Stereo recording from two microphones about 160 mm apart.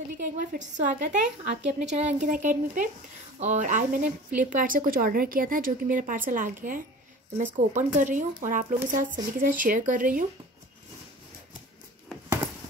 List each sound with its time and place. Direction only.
0.2 s speech: 55° right (ahead or behind)